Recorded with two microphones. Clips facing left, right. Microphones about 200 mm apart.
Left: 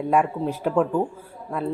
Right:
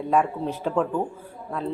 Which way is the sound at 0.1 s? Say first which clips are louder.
Left 1 dB; 10° left (ahead or behind).